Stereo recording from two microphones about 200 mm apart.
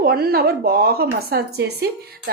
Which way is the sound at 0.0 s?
50° right (ahead or behind).